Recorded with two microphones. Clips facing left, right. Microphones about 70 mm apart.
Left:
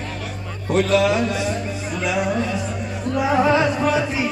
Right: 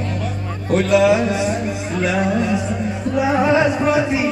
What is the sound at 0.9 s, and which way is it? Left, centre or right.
Speech, centre.